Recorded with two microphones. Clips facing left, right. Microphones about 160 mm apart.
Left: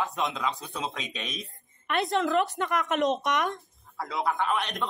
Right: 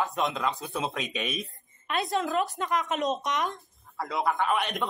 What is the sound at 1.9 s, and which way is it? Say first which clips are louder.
Speech: left 2 dB; 60° left (ahead or behind).